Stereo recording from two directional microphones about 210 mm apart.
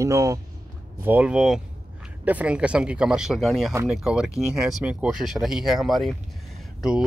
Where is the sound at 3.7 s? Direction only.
10° right (ahead or behind).